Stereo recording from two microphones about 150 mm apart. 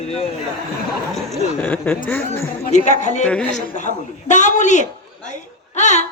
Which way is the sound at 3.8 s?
55° left (ahead or behind).